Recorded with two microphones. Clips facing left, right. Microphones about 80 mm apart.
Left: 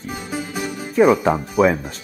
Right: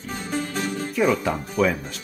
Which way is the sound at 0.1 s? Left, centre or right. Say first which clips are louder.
Even; centre.